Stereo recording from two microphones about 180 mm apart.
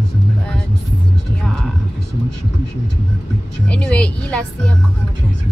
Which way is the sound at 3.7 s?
5° left (ahead or behind).